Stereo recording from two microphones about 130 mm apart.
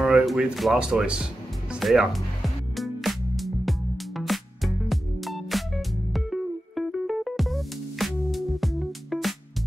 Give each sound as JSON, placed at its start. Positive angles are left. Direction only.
{"t": 0.0, "sound": "music", "side_deg": -5}